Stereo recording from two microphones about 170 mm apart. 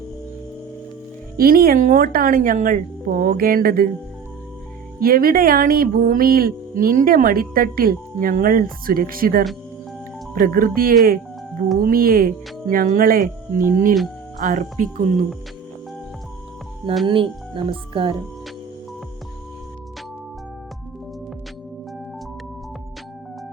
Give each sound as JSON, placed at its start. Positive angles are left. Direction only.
{"t": 1.4, "sound": "music", "side_deg": -60}
{"t": 4.9, "sound": "music", "side_deg": -60}
{"t": 13.7, "sound": "speech", "side_deg": -50}
{"t": 17.1, "sound": "speech", "side_deg": -30}